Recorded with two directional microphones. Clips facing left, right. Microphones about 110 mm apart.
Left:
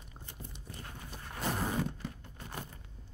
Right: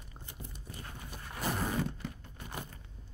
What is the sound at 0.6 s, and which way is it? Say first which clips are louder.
Walk: even; 5° right (ahead or behind).